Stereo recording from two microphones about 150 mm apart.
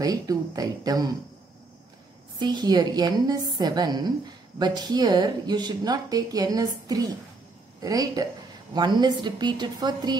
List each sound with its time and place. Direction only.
0.0 s speech: 25° right (ahead or behind)
2.3 s speech: 30° right (ahead or behind)